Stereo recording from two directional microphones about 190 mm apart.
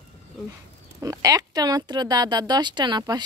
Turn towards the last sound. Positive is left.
turn(degrees=-20)  # may be behind; listen again after turning